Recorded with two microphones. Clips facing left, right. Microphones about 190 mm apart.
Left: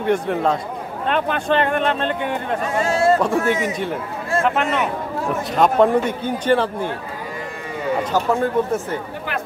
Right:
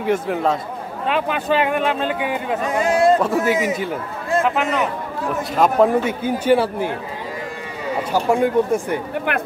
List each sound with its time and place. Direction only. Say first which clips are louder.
0.0 s a man's voice: even; 5° right (ahead or behind)
2.7 s speech: right 2 dB; 15° right (ahead or behind)
3.2 s a man's voice: right 1 dB; 5° right (ahead or behind)
8.0 s speech: right 3 dB; 10° right (ahead or behind)